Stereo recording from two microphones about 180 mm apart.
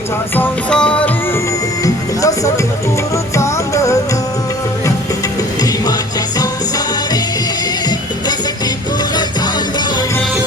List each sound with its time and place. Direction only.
0.3 s music: 5° left (ahead or behind)
1.8 s music: 20° left (ahead or behind)
6.4 s music: 20° left (ahead or behind)